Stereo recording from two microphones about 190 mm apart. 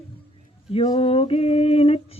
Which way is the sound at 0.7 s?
30° left (ahead or behind).